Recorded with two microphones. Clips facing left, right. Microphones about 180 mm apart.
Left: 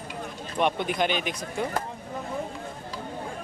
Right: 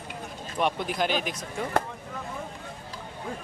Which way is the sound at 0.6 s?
Centre (ahead or behind).